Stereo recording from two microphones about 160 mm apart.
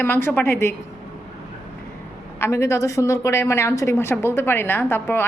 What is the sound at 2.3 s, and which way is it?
A woman's voice, 15° left (ahead or behind).